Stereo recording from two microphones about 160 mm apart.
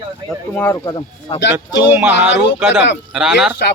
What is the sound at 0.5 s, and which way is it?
Speech, 15° left (ahead or behind).